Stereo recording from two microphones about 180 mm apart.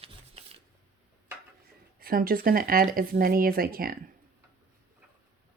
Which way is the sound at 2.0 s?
55° right (ahead or behind).